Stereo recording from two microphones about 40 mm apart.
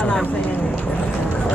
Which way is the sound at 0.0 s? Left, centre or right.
Left.